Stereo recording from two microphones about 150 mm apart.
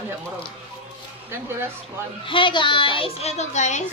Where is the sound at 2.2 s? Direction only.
35° left (ahead or behind); by 3.8 s 50° left (ahead or behind).